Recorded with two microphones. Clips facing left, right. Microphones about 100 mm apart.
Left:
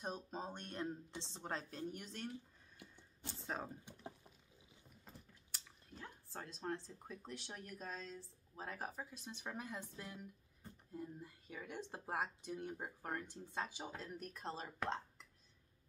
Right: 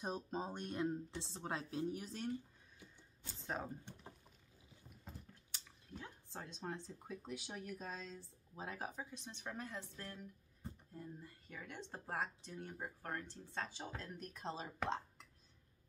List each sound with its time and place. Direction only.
0.0 s speech: 5° right (ahead or behind)
3.3 s speech: centre (ahead or behind)